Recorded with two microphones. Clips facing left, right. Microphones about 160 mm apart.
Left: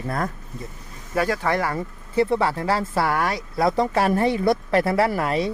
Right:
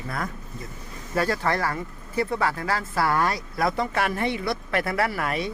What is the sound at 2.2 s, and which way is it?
Speech, 30° left (ahead or behind).